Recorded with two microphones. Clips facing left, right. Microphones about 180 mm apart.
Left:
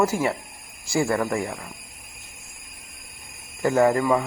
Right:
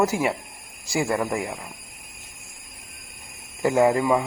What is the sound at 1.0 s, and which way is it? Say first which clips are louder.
Speech: even; 20° right (ahead or behind).